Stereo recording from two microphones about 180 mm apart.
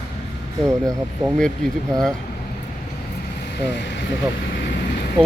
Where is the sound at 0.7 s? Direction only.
15° right (ahead or behind).